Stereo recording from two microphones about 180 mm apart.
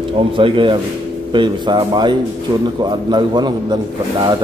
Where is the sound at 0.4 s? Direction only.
30° right (ahead or behind).